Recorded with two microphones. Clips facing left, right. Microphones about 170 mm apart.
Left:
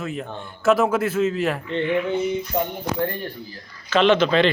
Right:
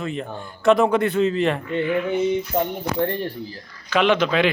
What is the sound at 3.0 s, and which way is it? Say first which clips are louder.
Speech: right 5 dB; 30° right (ahead or behind).